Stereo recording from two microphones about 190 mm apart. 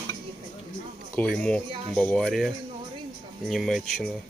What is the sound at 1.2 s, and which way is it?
Speech, 5° left (ahead or behind).